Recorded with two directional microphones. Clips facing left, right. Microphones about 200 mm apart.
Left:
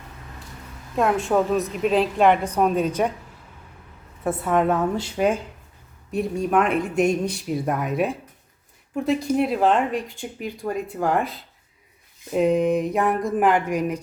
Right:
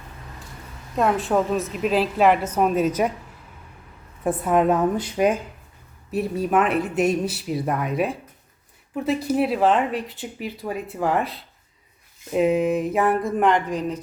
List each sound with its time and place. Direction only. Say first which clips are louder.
0.9 s speech: even; centre (ahead or behind)
4.2 s a woman's voice: right 1 dB; 15° right (ahead or behind)
6.1 s speech: even; 5° right (ahead or behind)
9.2 s speech: right 2 dB; 5° right (ahead or behind); by 14.0 s 10° left (ahead or behind)